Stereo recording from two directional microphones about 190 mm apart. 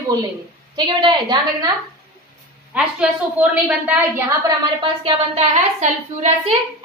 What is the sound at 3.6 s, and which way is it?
Speech, 10° right (ahead or behind).